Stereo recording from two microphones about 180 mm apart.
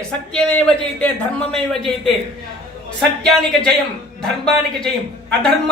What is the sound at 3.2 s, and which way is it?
A man's voice, 5° left (ahead or behind).